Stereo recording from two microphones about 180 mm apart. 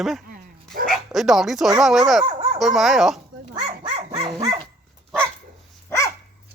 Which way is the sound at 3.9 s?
35° right (ahead or behind).